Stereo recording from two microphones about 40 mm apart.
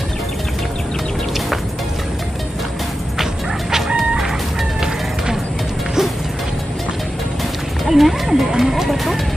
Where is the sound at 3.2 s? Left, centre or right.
Centre.